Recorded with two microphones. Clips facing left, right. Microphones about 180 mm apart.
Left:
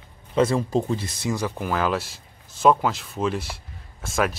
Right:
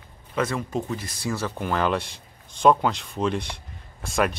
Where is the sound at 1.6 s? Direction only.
5° left (ahead or behind).